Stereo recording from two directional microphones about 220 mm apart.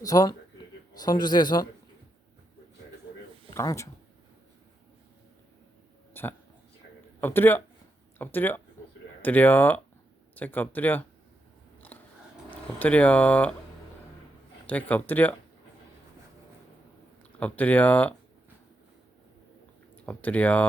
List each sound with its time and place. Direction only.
0.0 s a man's voice: 15° left (ahead or behind)
3.5 s speech: 15° left (ahead or behind)
6.2 s a man's voice: 10° left (ahead or behind)
11.8 s a sound: 5° left (ahead or behind)
12.5 s speech: 5° left (ahead or behind)
14.7 s speech: 5° left (ahead or behind)
17.4 s speech: 5° left (ahead or behind)
20.1 s speech: 5° left (ahead or behind)